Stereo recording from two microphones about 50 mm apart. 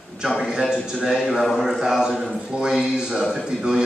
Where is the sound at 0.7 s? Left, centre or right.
Centre.